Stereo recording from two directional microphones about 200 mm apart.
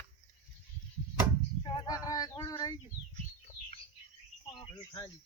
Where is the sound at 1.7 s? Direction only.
20° left (ahead or behind).